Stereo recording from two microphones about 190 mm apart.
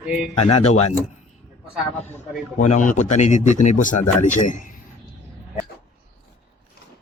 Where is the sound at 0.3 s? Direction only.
35° left (ahead or behind).